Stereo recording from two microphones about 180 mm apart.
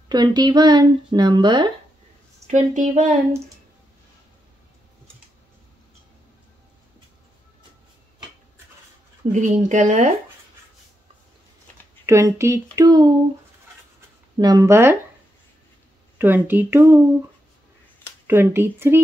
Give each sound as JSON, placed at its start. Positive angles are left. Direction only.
{"t": 0.1, "sound": "speech", "side_deg": -25}
{"t": 2.4, "sound": "speech", "side_deg": -40}
{"t": 9.3, "sound": "speech", "side_deg": -45}
{"t": 12.1, "sound": "speech", "side_deg": -15}
{"t": 14.4, "sound": "speech", "side_deg": -20}
{"t": 16.2, "sound": "speech", "side_deg": -10}
{"t": 18.2, "sound": "speech", "side_deg": -15}